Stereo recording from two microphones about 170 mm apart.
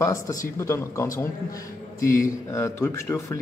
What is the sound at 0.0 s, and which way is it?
Speech, 20° left (ahead or behind).